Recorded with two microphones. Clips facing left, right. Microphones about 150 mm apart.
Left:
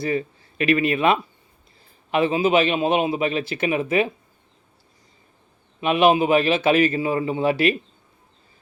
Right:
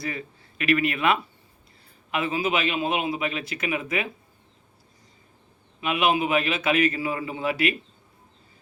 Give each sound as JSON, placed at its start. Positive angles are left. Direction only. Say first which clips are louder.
{"t": 0.0, "sound": "a man's voice", "louder": "left 9 dB", "side_deg": 30}
{"t": 5.8, "sound": "a man's voice", "louder": "left 6 dB", "side_deg": 30}